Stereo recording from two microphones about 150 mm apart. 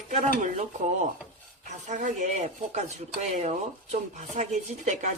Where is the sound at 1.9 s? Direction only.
55° right (ahead or behind).